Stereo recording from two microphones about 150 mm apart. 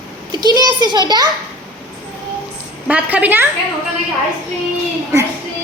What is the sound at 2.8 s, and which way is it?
Speech, 10° right (ahead or behind).